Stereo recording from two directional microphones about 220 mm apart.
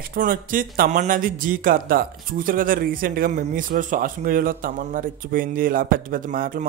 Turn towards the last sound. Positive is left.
turn(degrees=-40)  # may be behind; listen again after turning